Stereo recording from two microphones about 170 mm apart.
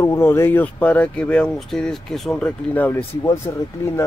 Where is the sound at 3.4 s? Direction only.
25° left (ahead or behind).